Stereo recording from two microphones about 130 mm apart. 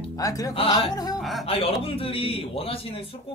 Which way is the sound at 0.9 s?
30° left (ahead or behind).